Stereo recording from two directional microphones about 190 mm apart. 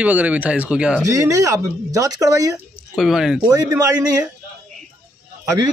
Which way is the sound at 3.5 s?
20° right (ahead or behind).